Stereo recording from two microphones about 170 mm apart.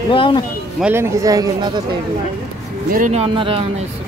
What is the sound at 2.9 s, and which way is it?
Speech, 45° right (ahead or behind).